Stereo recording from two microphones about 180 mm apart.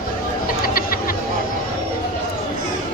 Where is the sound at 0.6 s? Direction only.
55° left (ahead or behind).